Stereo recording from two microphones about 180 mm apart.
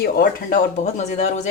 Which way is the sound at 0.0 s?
50° left (ahead or behind).